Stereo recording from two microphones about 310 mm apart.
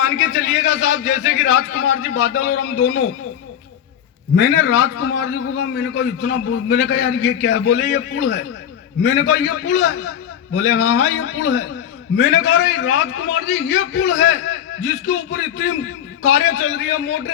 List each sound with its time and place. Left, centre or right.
0.0 s a man's voice: left
4.4 s a man's voice: left
10.5 s a man's voice: left
16.2 s a man's voice: left